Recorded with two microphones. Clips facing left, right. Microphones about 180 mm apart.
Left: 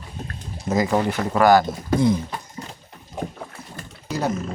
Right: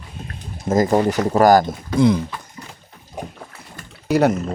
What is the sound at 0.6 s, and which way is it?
Speech, 45° right (ahead or behind).